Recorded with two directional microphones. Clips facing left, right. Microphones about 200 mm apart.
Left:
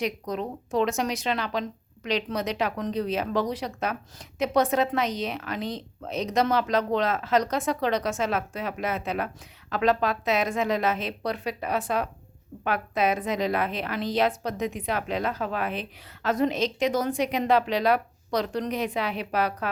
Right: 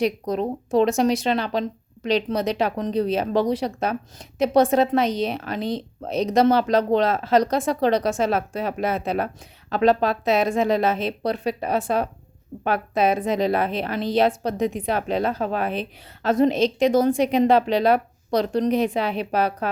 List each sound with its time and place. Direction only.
0.0 s a woman's voice: 35° right (ahead or behind)